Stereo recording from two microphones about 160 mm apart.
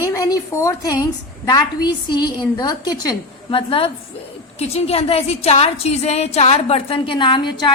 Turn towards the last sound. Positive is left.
turn(degrees=30)  # may be behind; listen again after turning